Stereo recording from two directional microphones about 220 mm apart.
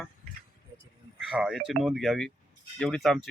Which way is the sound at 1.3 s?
Centre (ahead or behind).